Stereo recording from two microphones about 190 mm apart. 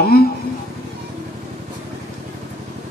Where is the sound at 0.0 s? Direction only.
50° left (ahead or behind).